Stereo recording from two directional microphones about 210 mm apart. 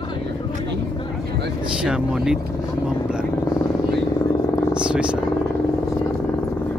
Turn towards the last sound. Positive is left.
turn(degrees=-5)  # may be behind; listen again after turning